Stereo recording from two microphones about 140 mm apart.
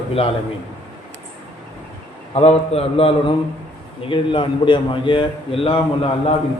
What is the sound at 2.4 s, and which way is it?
A man's voice, 45° left (ahead or behind).